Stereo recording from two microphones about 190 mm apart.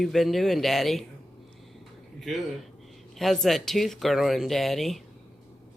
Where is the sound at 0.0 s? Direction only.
Centre (ahead or behind).